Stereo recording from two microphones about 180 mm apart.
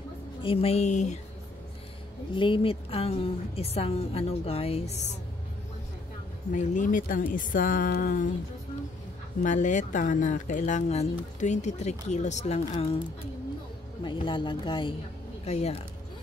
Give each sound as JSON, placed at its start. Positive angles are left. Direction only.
{"t": 0.4, "sound": "speech", "side_deg": 30}
{"t": 2.3, "sound": "speech", "side_deg": 30}
{"t": 6.5, "sound": "speech", "side_deg": 45}
{"t": 9.4, "sound": "speech", "side_deg": 45}
{"t": 14.0, "sound": "speech", "side_deg": 25}